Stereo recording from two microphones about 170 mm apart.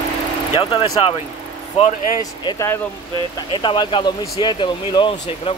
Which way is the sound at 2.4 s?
15° left (ahead or behind).